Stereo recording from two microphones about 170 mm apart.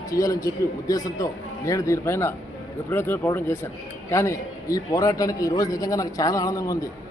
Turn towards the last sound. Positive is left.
turn(degrees=20)  # may be behind; listen again after turning